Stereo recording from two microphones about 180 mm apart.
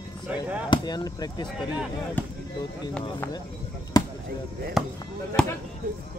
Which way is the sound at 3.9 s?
20° left (ahead or behind).